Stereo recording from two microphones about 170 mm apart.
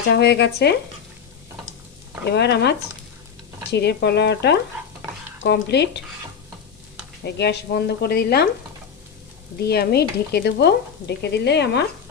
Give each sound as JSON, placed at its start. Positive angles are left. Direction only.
{"t": 0.1, "sound": "speech", "side_deg": 80}
{"t": 2.3, "sound": "frying", "side_deg": 80}
{"t": 7.3, "sound": "speech", "side_deg": 80}
{"t": 9.6, "sound": "speech", "side_deg": 70}
{"t": 11.2, "sound": "frying", "side_deg": 80}